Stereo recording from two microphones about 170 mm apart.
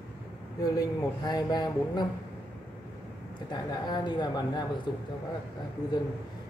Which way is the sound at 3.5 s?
25° left (ahead or behind).